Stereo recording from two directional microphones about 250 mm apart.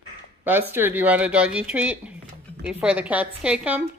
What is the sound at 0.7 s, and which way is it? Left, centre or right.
Speech, centre.